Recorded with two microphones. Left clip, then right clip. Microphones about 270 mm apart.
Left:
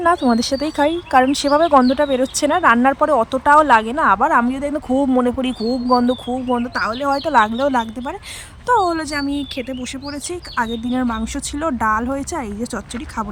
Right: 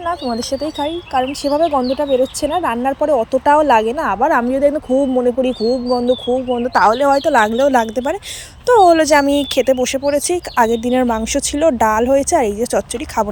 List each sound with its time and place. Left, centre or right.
0.0 s speech: left
0.3 s speech: centre
6.7 s speech: centre
7.1 s speech: centre